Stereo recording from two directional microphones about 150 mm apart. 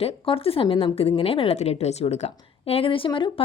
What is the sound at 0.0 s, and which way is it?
A woman's voice, 40° left (ahead or behind).